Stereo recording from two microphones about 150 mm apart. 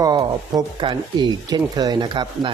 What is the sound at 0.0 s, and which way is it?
Speech, 25° right (ahead or behind).